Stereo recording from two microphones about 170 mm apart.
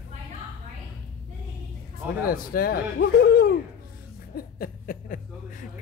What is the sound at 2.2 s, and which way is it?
A man's voice, 60° left (ahead or behind).